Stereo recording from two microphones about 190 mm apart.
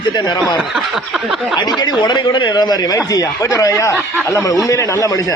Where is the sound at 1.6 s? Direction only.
20° left (ahead or behind).